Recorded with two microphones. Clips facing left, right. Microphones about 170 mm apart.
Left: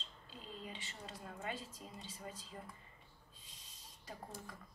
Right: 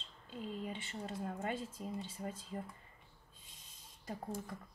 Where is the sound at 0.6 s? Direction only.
55° right (ahead or behind).